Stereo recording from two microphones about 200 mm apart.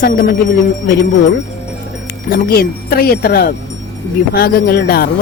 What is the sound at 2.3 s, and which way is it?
Speech, 50° left (ahead or behind).